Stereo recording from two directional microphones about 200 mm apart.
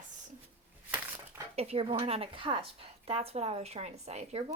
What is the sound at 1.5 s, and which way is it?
A woman's voice, 30° right (ahead or behind).